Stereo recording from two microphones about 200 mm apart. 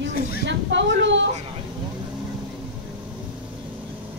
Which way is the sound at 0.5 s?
65° right (ahead or behind).